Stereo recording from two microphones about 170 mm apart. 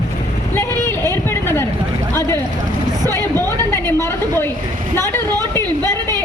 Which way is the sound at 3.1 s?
15° left (ahead or behind).